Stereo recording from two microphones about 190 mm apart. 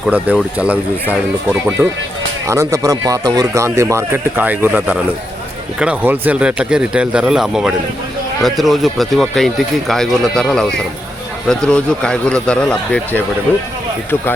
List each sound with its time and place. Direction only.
0.0 s speech: 5° right (ahead or behind)